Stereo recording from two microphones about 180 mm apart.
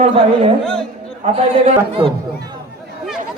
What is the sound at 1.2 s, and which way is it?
Speech, 35° right (ahead or behind).